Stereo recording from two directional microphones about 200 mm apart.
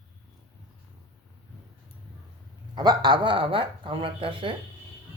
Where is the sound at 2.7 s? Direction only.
20° right (ahead or behind).